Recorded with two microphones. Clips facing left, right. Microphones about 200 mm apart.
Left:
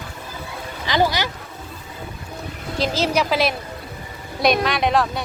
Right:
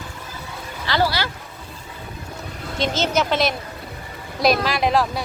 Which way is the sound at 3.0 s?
Centre (ahead or behind).